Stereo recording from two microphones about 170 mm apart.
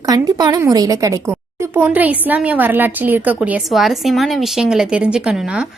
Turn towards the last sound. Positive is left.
turn(degrees=-5)  # may be behind; listen again after turning